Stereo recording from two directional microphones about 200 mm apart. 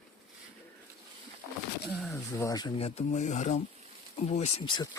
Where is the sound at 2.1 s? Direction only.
15° left (ahead or behind).